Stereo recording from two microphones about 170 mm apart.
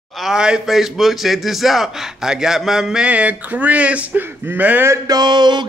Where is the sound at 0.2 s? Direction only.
5° right (ahead or behind).